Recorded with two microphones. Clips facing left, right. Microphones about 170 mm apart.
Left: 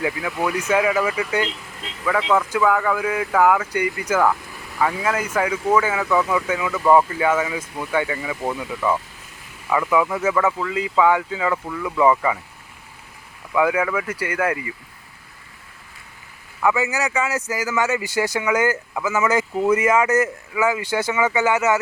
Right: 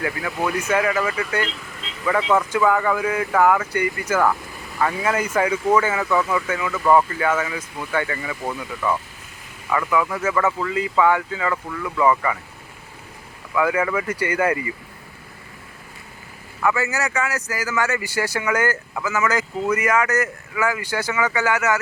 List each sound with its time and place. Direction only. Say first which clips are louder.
0.0 s speech: left 1 dB; 5° left (ahead or behind)
2.0 s speech: even; 5° right (ahead or behind); by 12.4 s 15° left (ahead or behind)
13.5 s speech: left 1 dB; 15° left (ahead or behind)
13.8 s speech: right 1 dB; centre (ahead or behind)
16.6 s speech: left 1 dB; 15° left (ahead or behind)